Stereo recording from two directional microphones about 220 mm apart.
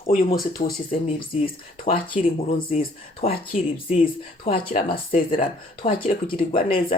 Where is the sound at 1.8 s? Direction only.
40° left (ahead or behind).